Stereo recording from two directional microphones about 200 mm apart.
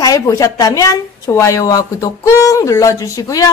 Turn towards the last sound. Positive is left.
turn(degrees=15)  # may be behind; listen again after turning